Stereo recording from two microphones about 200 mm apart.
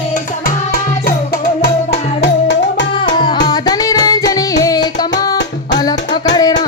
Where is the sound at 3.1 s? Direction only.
20° left (ahead or behind).